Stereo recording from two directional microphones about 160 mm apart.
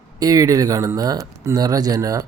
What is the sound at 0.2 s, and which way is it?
Speech, 25° right (ahead or behind).